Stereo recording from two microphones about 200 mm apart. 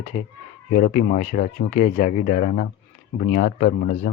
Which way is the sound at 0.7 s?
40° left (ahead or behind).